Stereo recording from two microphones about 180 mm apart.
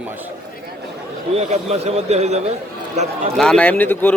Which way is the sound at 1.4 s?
35° right (ahead or behind).